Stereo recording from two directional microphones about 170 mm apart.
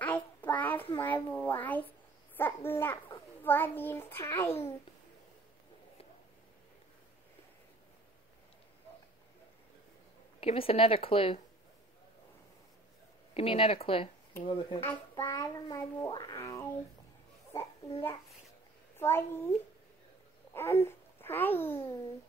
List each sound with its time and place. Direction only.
0.0 s child singing: 10° left (ahead or behind)
0.9 s a child's voice: 10° left (ahead or behind)
10.4 s a woman's voice: 35° left (ahead or behind)
13.3 s a woman's voice: 35° left (ahead or behind); by 16.6 s 20° left (ahead or behind)
18.9 s a child's voice: 15° left (ahead or behind)
20.5 s a child's voice: 15° left (ahead or behind)